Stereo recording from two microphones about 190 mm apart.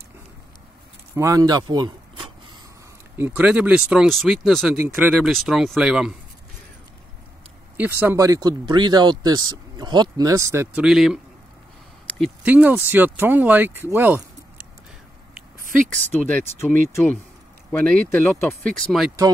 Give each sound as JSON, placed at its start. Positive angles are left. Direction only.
{"t": 1.1, "sound": "speech", "side_deg": -15}
{"t": 3.2, "sound": "speech", "side_deg": -10}
{"t": 7.7, "sound": "speech", "side_deg": -10}
{"t": 12.4, "sound": "speech", "side_deg": -10}
{"t": 15.9, "sound": "speech", "side_deg": 10}